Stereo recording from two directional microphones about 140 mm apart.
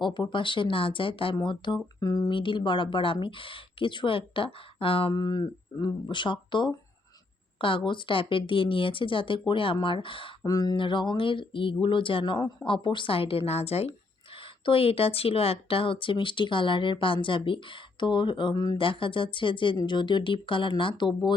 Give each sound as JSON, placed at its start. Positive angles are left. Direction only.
{"t": 0.0, "sound": "speech", "side_deg": 35}
{"t": 10.4, "sound": "speech", "side_deg": 25}
{"t": 18.9, "sound": "speech", "side_deg": 40}